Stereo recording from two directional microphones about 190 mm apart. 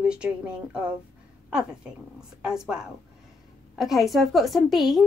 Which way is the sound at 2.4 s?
5° right (ahead or behind).